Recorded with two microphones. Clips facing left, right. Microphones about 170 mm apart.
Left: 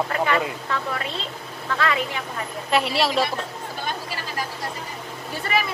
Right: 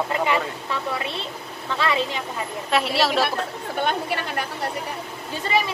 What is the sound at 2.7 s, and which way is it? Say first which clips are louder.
Speech: even; centre (ahead or behind).